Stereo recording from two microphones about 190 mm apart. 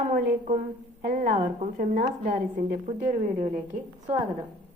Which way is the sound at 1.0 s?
50° right (ahead or behind).